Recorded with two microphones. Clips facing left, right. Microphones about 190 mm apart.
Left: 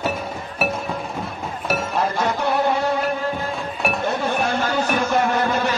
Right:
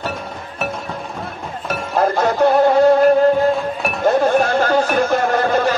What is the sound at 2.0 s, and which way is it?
Music, 60° right (ahead or behind).